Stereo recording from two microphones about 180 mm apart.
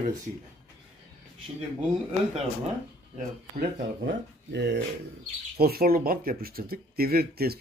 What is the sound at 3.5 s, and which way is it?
Speech, 60° right (ahead or behind).